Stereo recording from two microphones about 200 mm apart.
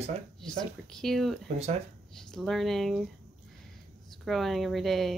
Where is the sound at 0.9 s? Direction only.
Centre (ahead or behind).